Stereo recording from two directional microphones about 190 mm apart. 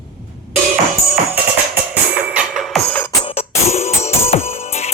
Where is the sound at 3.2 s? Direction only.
35° left (ahead or behind).